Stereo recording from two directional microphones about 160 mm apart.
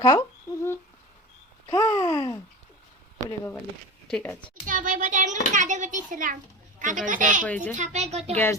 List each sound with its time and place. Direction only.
0.0 s humming: 25° left (ahead or behind)
1.7 s a sound: 20° left (ahead or behind)
3.2 s speech: 15° left (ahead or behind)
4.6 s a child's voice: 55° right (ahead or behind)
7.4 s speech: 10° left (ahead or behind)
7.8 s a child's voice: 45° right (ahead or behind)